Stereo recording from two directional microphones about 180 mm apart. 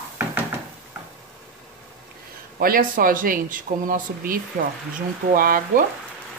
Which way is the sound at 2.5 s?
55° right (ahead or behind).